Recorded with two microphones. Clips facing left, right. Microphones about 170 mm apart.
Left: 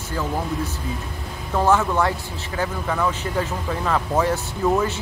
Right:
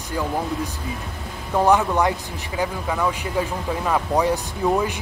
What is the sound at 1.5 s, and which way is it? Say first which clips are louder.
Speech: right 1 dB; 15° right (ahead or behind).